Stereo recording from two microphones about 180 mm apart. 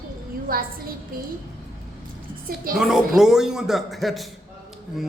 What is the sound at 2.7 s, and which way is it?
Speech, 55° right (ahead or behind).